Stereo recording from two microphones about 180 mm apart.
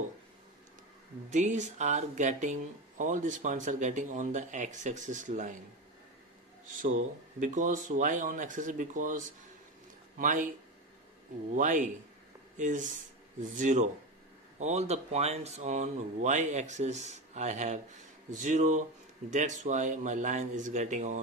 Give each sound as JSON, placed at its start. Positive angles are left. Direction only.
{"t": 1.3, "sound": "speech", "side_deg": -40}
{"t": 7.3, "sound": "speech", "side_deg": -45}
{"t": 11.5, "sound": "speech", "side_deg": -45}